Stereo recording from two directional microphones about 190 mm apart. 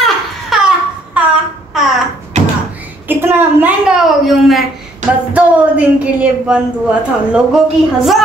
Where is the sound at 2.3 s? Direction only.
40° right (ahead or behind).